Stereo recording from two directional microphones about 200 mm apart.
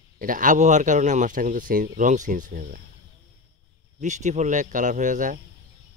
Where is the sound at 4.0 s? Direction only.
35° right (ahead or behind).